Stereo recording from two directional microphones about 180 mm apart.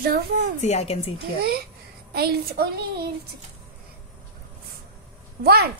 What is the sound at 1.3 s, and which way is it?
A woman's voice, 60° right (ahead or behind).